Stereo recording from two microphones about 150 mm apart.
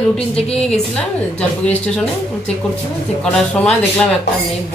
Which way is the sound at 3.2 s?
5° left (ahead or behind).